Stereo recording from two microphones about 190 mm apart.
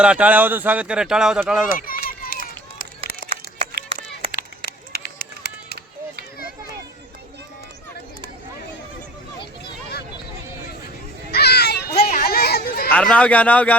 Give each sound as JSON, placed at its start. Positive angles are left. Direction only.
{"t": 0.0, "sound": "speech", "side_deg": -5}
{"t": 1.7, "sound": "run", "side_deg": 50}
{"t": 3.7, "sound": "a sound", "side_deg": -60}
{"t": 4.4, "sound": "run", "side_deg": 50}
{"t": 11.3, "sound": "children playing", "side_deg": 60}
{"t": 12.0, "sound": "a sound", "side_deg": 55}
{"t": 12.9, "sound": "a man's voice", "side_deg": 5}